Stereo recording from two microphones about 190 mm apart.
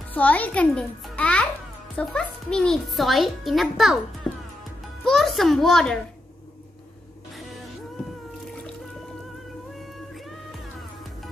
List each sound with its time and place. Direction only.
0.1 s a child's voice: 10° left (ahead or behind)